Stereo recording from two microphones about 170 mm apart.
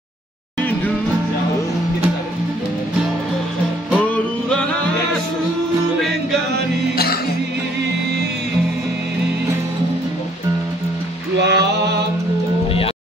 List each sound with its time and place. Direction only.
3.9 s music: 5° left (ahead or behind)
11.3 s music: 90° right